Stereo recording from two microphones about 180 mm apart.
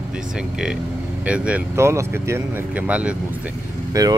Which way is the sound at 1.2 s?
5° right (ahead or behind).